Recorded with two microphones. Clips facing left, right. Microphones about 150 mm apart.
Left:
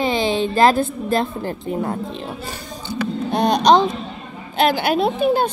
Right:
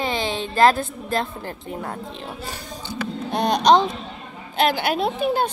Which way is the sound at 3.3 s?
35° left (ahead or behind).